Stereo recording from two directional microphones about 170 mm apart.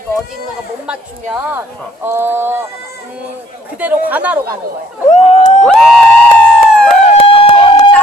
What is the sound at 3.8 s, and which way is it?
Speech, 10° right (ahead or behind).